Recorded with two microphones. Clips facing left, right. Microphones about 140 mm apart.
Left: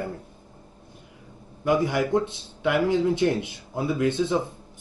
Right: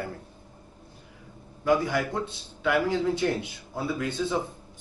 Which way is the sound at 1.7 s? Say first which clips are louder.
Left 2 dB; 20° left (ahead or behind).